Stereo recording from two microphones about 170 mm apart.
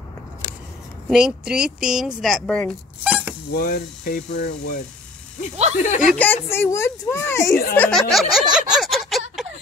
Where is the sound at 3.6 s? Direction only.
60° left (ahead or behind).